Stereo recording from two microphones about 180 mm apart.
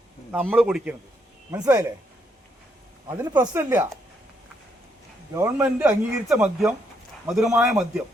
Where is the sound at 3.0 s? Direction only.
25° right (ahead or behind).